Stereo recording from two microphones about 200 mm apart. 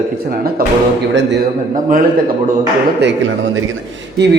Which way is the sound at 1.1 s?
60° right (ahead or behind).